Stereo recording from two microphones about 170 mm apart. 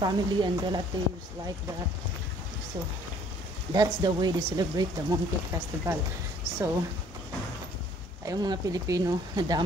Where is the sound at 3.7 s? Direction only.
25° right (ahead or behind).